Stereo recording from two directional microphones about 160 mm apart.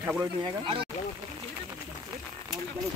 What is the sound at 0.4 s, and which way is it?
Speech, 30° right (ahead or behind).